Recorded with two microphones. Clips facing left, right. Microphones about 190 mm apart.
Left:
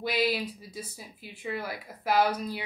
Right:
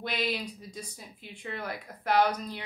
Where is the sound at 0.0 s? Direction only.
5° left (ahead or behind).